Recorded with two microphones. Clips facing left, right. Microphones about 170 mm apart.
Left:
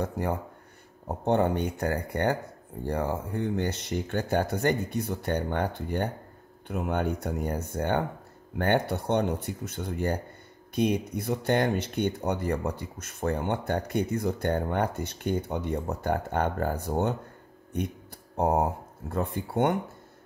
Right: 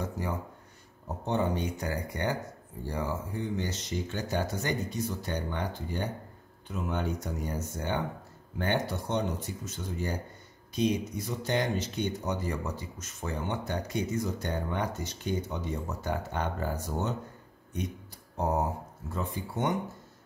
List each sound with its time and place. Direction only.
0.0 s speech: 55° left (ahead or behind)